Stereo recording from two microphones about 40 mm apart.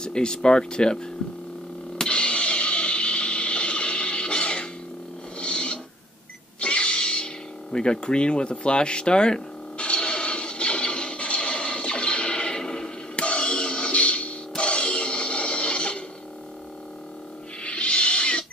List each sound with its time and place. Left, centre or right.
0.0 s speech: left
2.0 s music: left
5.4 s owl: left
6.6 s music: left
7.7 s a sound: left
14.6 s music: left
17.6 s music: left